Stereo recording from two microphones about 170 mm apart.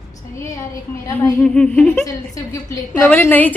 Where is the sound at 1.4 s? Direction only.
10° left (ahead or behind).